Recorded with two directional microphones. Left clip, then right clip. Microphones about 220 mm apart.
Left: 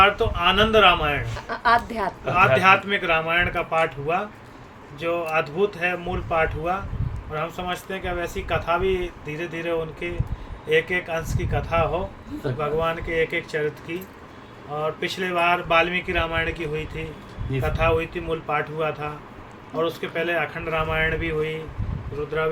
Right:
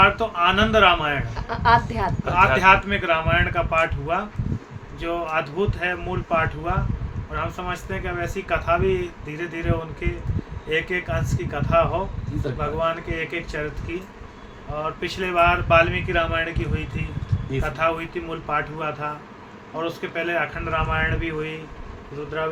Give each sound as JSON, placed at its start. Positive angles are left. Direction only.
{"t": 0.0, "sound": "speech", "side_deg": -15}
{"t": 1.5, "sound": "a woman's voice", "side_deg": 5}
{"t": 2.2, "sound": "speech", "side_deg": -15}
{"t": 15.0, "sound": "speech", "side_deg": -10}